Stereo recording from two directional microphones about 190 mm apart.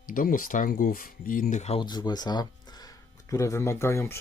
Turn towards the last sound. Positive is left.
turn(degrees=15)  # may be behind; listen again after turning